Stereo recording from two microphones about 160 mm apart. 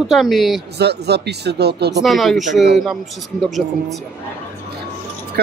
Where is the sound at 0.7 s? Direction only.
90° right.